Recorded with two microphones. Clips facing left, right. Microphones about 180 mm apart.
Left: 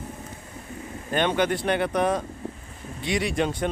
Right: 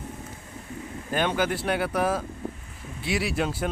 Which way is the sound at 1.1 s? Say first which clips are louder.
Left 2 dB; 5° right (ahead or behind).